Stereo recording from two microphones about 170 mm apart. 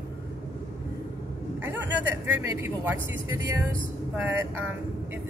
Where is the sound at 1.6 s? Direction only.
10° right (ahead or behind).